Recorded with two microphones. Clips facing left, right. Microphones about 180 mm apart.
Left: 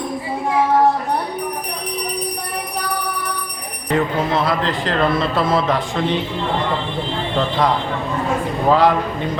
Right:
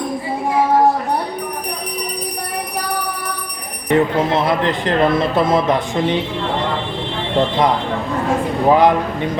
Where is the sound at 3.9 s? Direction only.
20° right (ahead or behind).